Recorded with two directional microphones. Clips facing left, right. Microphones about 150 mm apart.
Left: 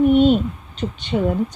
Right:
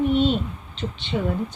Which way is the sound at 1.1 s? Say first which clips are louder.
Left 5 dB; 35° left (ahead or behind).